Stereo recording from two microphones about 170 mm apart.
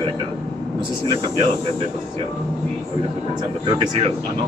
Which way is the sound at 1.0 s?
30° right (ahead or behind).